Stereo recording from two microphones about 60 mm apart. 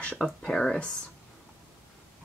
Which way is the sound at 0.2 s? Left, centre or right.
Centre.